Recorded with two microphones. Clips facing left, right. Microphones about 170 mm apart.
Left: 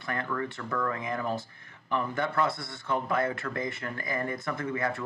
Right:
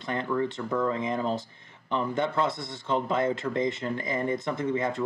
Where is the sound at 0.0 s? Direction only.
20° right (ahead or behind).